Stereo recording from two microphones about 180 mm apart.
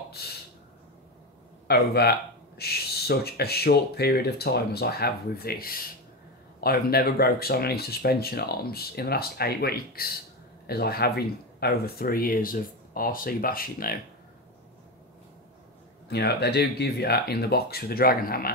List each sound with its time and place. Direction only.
0.2 s speech: 60° left (ahead or behind)
1.7 s speech: 60° left (ahead or behind)
16.1 s speech: 65° left (ahead or behind)